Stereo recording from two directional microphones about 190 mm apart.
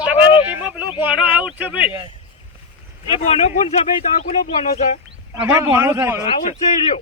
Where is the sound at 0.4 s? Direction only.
10° right (ahead or behind).